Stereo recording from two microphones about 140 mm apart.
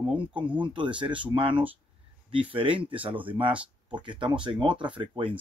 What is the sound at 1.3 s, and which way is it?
Speech, 40° right (ahead or behind).